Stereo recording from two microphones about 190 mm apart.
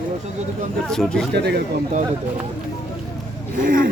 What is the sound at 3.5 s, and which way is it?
Speech, 45° right (ahead or behind).